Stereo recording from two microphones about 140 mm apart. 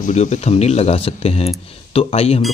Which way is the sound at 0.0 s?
60° left (ahead or behind).